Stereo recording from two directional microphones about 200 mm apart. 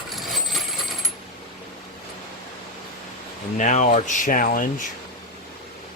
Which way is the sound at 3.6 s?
35° left (ahead or behind).